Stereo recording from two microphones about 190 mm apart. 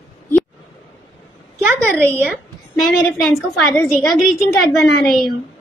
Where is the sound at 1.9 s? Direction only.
10° left (ahead or behind).